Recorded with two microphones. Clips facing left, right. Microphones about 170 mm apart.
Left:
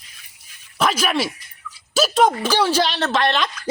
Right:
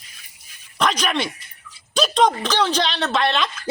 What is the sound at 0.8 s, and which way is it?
A woman's voice, 5° left (ahead or behind).